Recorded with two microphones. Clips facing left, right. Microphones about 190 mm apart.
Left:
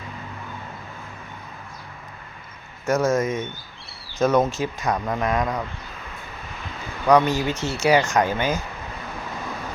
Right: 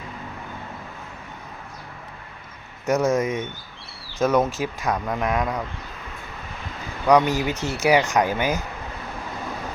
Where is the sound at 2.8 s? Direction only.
15° right (ahead or behind).